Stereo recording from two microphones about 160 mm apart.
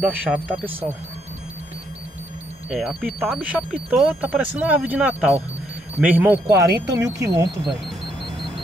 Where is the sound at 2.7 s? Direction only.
5° right (ahead or behind); by 7.4 s 20° right (ahead or behind).